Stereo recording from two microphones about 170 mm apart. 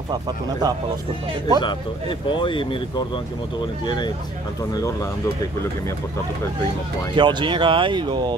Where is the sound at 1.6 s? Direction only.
30° left (ahead or behind).